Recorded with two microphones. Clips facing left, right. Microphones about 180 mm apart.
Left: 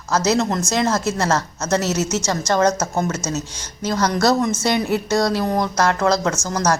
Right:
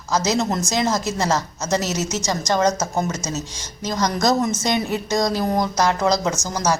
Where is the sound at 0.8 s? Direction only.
15° right (ahead or behind).